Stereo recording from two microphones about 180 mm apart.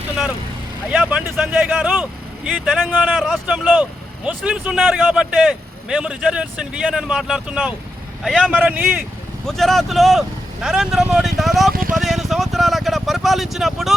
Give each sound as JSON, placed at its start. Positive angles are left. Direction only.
{"t": 0.9, "sound": "speech", "side_deg": -5}
{"t": 3.2, "sound": "a man's voice", "side_deg": 0}
{"t": 3.5, "sound": "a man's voice", "side_deg": -10}
{"t": 9.5, "sound": "a man's voice", "side_deg": 0}
{"t": 11.7, "sound": "speech", "side_deg": -50}
{"t": 11.9, "sound": "speech", "side_deg": 0}